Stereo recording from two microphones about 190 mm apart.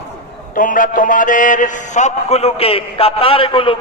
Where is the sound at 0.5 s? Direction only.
45° left (ahead or behind).